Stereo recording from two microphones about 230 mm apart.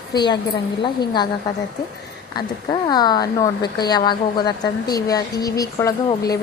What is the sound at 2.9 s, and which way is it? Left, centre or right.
Speech, centre.